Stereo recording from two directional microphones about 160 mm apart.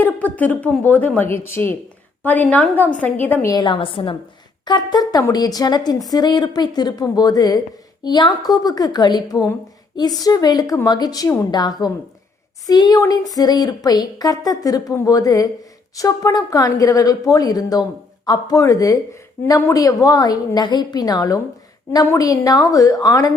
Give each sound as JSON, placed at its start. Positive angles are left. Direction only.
{"t": 0.0, "sound": "a woman's voice", "side_deg": 10}